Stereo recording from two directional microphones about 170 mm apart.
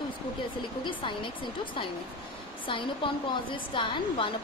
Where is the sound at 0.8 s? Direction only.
30° left (ahead or behind).